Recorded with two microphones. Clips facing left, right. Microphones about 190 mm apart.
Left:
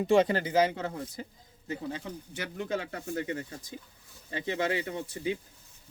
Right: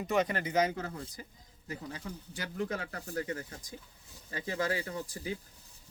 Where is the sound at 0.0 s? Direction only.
30° left (ahead or behind).